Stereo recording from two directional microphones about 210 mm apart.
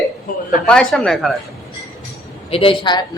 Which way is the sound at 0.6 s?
5° left (ahead or behind).